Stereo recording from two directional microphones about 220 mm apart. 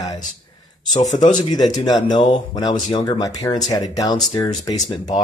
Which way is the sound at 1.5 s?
15° left (ahead or behind).